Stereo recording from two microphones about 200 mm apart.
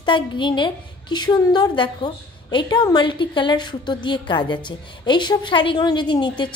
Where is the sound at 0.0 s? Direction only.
25° left (ahead or behind).